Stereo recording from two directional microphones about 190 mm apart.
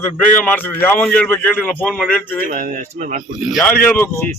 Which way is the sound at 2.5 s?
45° right (ahead or behind).